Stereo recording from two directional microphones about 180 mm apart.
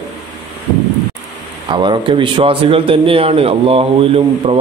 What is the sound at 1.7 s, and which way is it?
A man's voice, 25° right (ahead or behind).